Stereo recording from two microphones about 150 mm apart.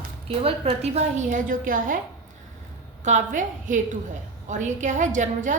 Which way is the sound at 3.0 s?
55° right (ahead or behind).